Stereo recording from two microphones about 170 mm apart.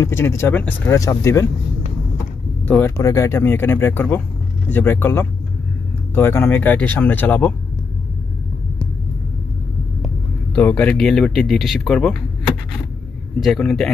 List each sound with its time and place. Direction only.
0.0 s speech: 15° left (ahead or behind)
2.6 s speech: 10° left (ahead or behind)
10.5 s speech: 10° left (ahead or behind)
13.4 s speech: centre (ahead or behind)